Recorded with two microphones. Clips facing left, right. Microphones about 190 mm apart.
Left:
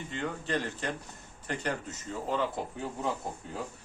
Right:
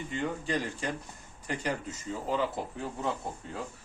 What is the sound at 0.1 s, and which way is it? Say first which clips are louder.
Speech: right 1 dB; 10° right (ahead or behind).